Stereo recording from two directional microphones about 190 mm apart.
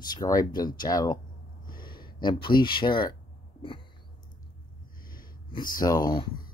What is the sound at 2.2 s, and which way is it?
Speech, 25° left (ahead or behind).